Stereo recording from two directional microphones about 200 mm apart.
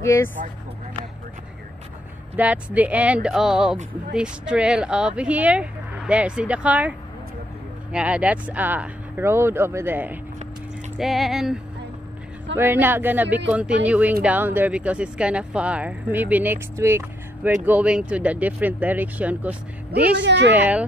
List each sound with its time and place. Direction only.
0.0 s speech: 15° left (ahead or behind)
2.3 s speech: 5° right (ahead or behind)
20.2 s speech: 60° right (ahead or behind)
20.5 s speech: 10° right (ahead or behind)